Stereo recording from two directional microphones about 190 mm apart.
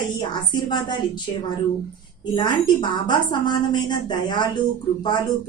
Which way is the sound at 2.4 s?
25° left (ahead or behind).